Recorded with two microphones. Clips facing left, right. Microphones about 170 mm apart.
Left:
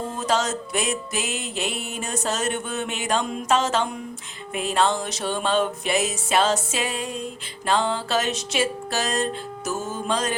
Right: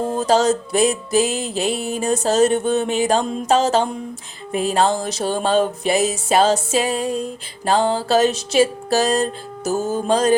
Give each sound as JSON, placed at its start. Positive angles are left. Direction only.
{"t": 0.1, "sound": "music", "side_deg": -35}